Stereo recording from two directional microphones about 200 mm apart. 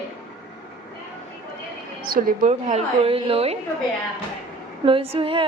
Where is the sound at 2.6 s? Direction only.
30° right (ahead or behind).